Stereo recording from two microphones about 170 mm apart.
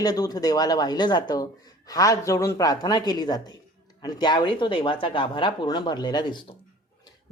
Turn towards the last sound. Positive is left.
turn(degrees=25)  # may be behind; listen again after turning